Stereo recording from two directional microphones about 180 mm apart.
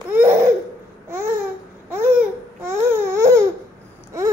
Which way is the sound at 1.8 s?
10° right (ahead or behind).